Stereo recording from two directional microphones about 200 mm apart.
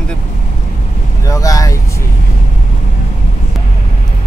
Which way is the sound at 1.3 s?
15° left (ahead or behind).